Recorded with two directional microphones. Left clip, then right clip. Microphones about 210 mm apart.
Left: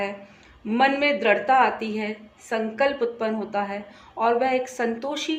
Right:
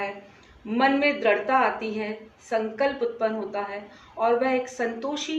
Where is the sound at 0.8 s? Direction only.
55° left (ahead or behind).